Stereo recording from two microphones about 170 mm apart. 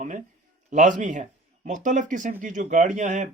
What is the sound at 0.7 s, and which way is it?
Speech, 45° right (ahead or behind).